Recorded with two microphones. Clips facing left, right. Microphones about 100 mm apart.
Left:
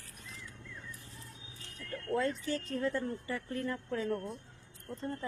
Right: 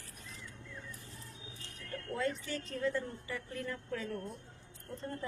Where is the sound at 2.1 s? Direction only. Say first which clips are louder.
Left 4 dB; 35° left (ahead or behind).